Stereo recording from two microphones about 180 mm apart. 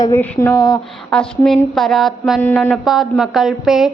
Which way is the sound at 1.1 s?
5° left (ahead or behind).